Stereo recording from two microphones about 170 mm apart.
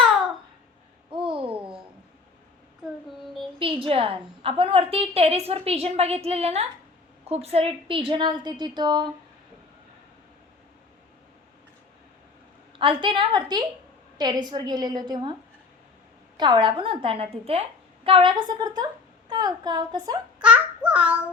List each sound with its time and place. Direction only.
1.1 s babbling: 30° right (ahead or behind)
3.6 s a woman's voice: 35° right (ahead or behind)
12.8 s a woman's voice: 30° right (ahead or behind)
16.4 s a woman's voice: 25° right (ahead or behind)
20.4 s a child's voice: 5° right (ahead or behind)